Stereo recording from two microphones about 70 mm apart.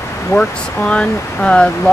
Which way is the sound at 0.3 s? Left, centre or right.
Centre.